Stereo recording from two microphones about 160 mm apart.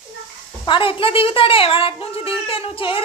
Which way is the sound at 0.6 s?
30° left (ahead or behind).